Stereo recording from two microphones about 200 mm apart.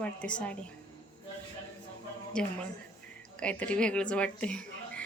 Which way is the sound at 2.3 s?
5° left (ahead or behind).